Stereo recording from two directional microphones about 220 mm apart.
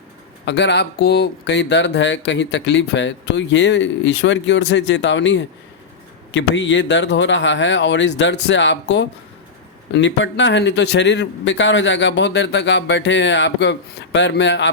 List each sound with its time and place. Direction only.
0.4 s speech: 50° left (ahead or behind)